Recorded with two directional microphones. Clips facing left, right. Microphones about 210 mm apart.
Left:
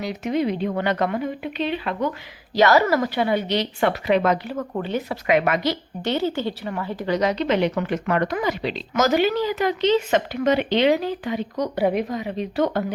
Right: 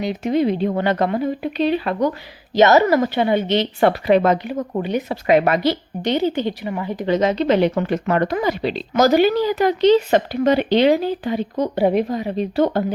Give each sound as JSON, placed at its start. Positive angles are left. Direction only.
{"t": 0.0, "sound": "speech", "side_deg": -30}
{"t": 2.6, "sound": "a woman's voice", "side_deg": -20}
{"t": 3.8, "sound": "speech", "side_deg": -35}
{"t": 4.4, "sound": "a woman's voice", "side_deg": -15}
{"t": 5.2, "sound": "speech", "side_deg": -35}
{"t": 6.0, "sound": "a woman's voice", "side_deg": -15}
{"t": 7.0, "sound": "speech", "side_deg": -25}